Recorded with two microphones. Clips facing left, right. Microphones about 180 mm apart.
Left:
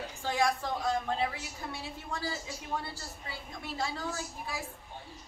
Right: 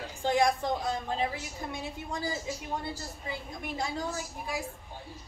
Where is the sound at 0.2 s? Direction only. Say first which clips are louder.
Right 4 dB; 20° right (ahead or behind).